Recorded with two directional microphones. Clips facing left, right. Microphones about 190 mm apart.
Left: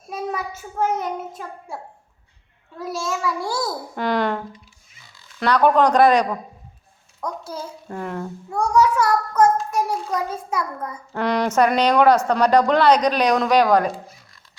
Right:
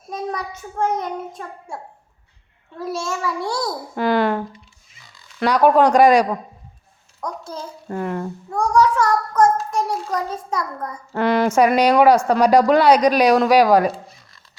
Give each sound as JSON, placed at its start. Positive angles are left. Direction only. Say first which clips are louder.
{"t": 0.1, "sound": "a child's voice", "louder": "even", "side_deg": 5}
{"t": 5.4, "sound": "speech", "louder": "right 2 dB", "side_deg": -10}
{"t": 7.4, "sound": "a child's voice", "louder": "right 1 dB", "side_deg": 10}
{"t": 8.4, "sound": "a child's voice", "louder": "right 1 dB", "side_deg": 10}
{"t": 11.1, "sound": "speech", "louder": "right 3 dB", "side_deg": -5}